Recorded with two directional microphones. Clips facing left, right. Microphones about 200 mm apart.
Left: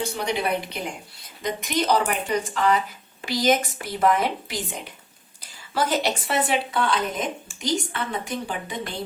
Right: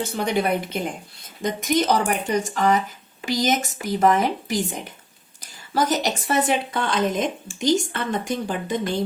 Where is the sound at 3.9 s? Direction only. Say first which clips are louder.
Right 3 dB; 45° right (ahead or behind).